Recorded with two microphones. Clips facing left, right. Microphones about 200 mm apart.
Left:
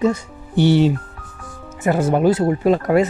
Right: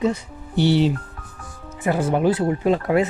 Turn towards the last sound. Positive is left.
turn(degrees=45)  # may be behind; listen again after turning